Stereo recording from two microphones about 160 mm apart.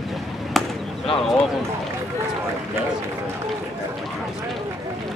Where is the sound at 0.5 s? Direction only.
Centre (ahead or behind).